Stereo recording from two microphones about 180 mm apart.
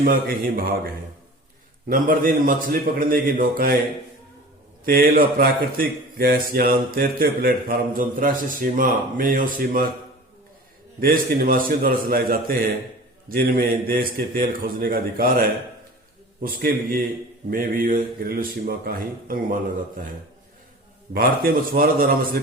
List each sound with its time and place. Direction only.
0.0 s speech: 50° right (ahead or behind)
1.9 s speech: 50° right (ahead or behind)
4.9 s speech: 55° right (ahead or behind)
11.0 s a man's voice: 55° right (ahead or behind)
21.1 s speech: 55° right (ahead or behind)